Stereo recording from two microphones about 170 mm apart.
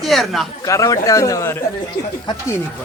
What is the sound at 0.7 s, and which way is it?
Speech, 20° left (ahead or behind).